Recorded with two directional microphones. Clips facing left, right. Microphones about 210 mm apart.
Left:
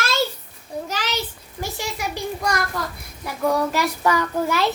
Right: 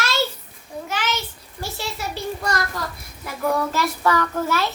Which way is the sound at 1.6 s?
15° left (ahead or behind).